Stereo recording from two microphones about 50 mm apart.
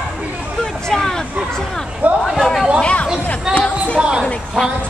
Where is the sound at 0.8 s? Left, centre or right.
Centre.